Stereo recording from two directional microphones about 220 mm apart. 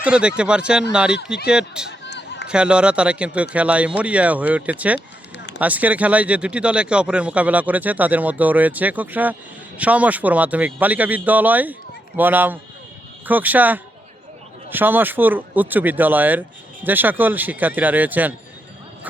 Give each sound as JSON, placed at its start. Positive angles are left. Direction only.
{"t": 0.0, "sound": "speech", "side_deg": -5}
{"t": 1.9, "sound": "a sound", "side_deg": 50}
{"t": 2.5, "sound": "speech", "side_deg": -5}